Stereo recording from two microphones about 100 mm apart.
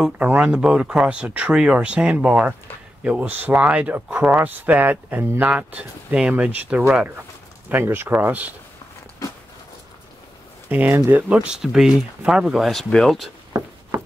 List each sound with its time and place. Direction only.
0.2 s speech: 15° right (ahead or behind)
10.7 s speech: 15° right (ahead or behind)
11.3 s speech: 5° right (ahead or behind)